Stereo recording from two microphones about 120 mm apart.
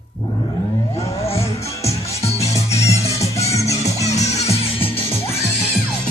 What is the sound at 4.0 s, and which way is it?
Music, 65° left (ahead or behind).